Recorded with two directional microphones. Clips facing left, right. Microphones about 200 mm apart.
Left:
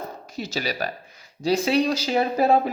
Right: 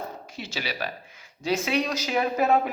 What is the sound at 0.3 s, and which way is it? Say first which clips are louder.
Speech: left 6 dB; 40° left (ahead or behind).